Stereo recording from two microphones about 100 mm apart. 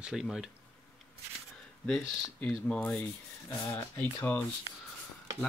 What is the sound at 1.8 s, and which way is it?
Speech, centre (ahead or behind).